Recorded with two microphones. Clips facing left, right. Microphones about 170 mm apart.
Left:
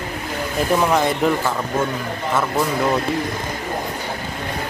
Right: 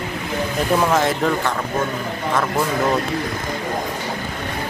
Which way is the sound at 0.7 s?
Centre (ahead or behind).